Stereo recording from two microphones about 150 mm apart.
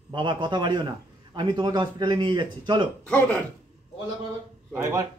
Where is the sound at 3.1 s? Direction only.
10° left (ahead or behind).